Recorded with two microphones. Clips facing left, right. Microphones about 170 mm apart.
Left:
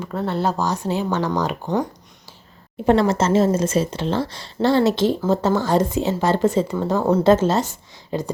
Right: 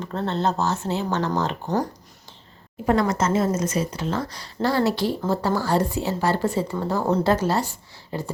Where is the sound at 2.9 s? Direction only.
25° left (ahead or behind).